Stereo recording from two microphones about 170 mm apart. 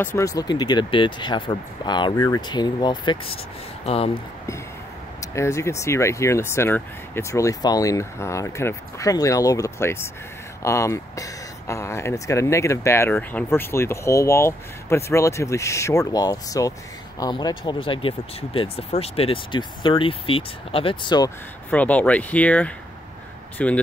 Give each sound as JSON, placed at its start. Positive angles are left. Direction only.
{"t": 0.0, "sound": "speech", "side_deg": 15}
{"t": 5.2, "sound": "speech", "side_deg": 15}
{"t": 21.6, "sound": "speech", "side_deg": 10}